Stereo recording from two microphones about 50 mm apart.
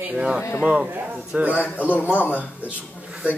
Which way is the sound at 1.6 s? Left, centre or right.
Left.